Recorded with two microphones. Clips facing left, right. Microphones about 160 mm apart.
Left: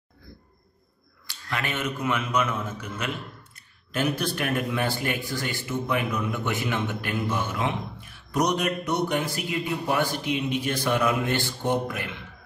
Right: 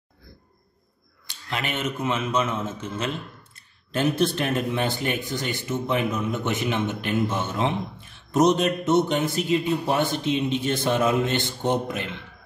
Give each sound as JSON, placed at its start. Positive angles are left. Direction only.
{"t": 1.2, "sound": "speech", "side_deg": -20}